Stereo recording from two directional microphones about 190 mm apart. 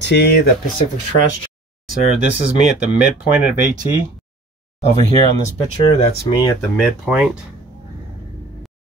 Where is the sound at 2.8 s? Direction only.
5° right (ahead or behind).